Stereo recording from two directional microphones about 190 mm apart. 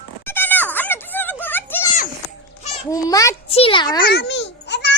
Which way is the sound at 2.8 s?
15° left (ahead or behind).